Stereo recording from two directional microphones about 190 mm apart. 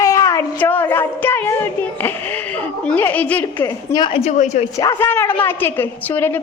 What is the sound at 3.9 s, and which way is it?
Speech, 25° left (ahead or behind).